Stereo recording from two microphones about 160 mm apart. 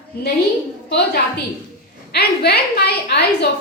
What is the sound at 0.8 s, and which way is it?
A woman's voice, 90° left.